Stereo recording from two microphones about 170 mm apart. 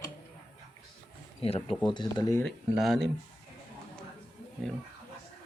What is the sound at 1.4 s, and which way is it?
Speech, 35° left (ahead or behind).